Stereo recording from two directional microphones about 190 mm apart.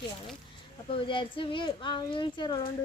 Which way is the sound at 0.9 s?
25° left (ahead or behind).